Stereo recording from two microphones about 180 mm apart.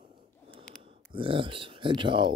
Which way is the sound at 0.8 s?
30° right (ahead or behind).